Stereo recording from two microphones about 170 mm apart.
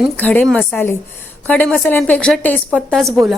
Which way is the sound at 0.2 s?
10° left (ahead or behind).